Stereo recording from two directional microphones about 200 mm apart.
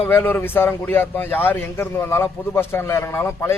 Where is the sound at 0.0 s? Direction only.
10° left (ahead or behind).